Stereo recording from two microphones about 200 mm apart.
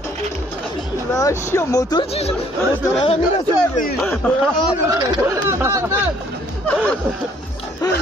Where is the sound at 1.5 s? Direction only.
15° left (ahead or behind).